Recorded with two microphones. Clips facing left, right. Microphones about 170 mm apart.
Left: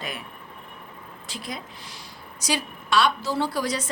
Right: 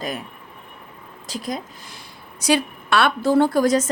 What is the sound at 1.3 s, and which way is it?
Speech, 45° right (ahead or behind).